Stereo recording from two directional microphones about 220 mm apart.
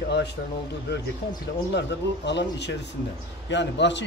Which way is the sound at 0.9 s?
50° left (ahead or behind).